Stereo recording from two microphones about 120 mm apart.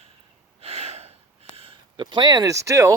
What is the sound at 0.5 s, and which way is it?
Gasp, 55° right (ahead or behind).